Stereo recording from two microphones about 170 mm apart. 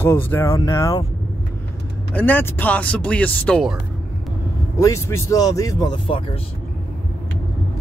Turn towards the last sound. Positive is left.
turn(degrees=30)  # may be behind; listen again after turning